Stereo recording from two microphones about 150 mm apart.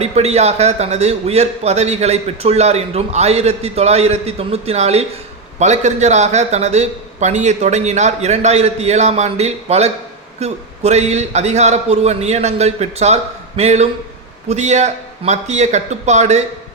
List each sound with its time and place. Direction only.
0.0 s a man's voice: 45° right (ahead or behind)